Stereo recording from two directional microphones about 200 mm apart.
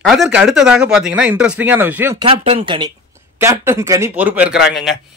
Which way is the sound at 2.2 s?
30° right (ahead or behind).